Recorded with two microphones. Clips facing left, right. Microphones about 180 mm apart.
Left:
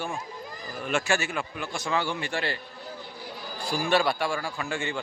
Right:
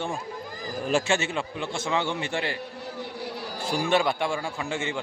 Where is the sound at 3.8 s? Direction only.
20° right (ahead or behind).